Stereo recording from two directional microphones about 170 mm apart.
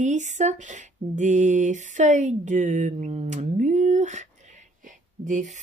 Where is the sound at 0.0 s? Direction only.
45° right (ahead or behind).